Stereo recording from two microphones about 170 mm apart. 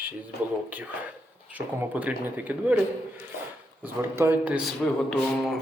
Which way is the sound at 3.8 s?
15° right (ahead or behind).